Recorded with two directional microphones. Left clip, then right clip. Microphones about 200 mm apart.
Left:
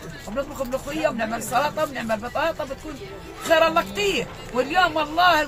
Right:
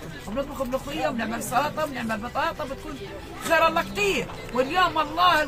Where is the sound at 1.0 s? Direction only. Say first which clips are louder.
Left 4 dB; 10° left (ahead or behind).